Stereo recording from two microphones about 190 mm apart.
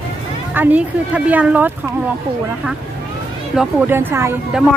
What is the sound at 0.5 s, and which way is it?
A woman's voice, 10° right (ahead or behind).